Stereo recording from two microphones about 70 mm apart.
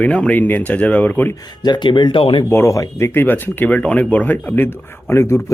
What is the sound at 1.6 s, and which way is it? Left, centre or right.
Speech, left.